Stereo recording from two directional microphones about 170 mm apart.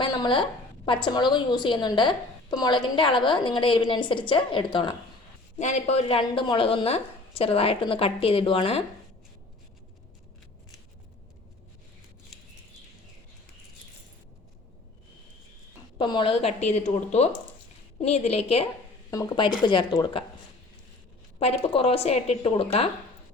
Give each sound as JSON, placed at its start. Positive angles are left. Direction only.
{"t": 0.0, "sound": "a sound", "side_deg": 25}
{"t": 0.9, "sound": "a woman's voice", "side_deg": 30}
{"t": 5.5, "sound": "speech", "side_deg": 40}
{"t": 16.0, "sound": "speech", "side_deg": 30}
{"t": 19.1, "sound": "a woman's voice", "side_deg": 20}
{"t": 21.3, "sound": "speech", "side_deg": 35}